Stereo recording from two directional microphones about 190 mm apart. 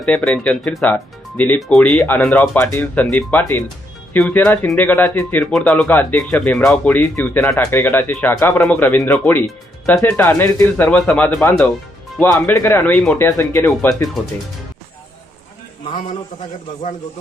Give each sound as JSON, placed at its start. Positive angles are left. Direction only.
{"t": 0.0, "sound": "speech", "side_deg": 5}
{"t": 15.9, "sound": "a man's voice", "side_deg": 25}